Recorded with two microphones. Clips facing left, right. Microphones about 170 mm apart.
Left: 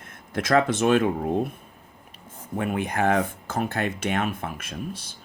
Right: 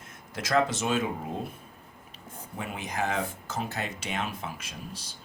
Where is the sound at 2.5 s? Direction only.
55° left (ahead or behind).